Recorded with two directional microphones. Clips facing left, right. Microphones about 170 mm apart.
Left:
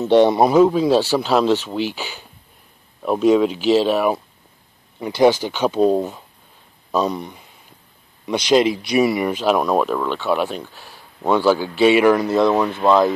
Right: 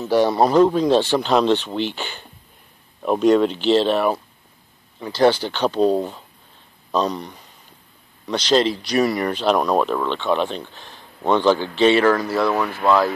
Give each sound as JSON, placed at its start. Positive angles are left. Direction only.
{"t": 0.0, "sound": "speech", "side_deg": 20}